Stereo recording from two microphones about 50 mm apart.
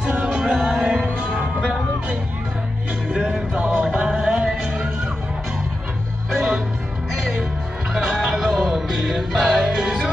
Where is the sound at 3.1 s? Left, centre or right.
Right.